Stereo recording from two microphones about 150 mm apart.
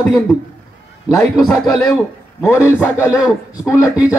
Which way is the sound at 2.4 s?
15° left (ahead or behind).